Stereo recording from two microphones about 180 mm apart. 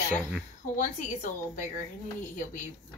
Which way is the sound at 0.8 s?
45° left (ahead or behind).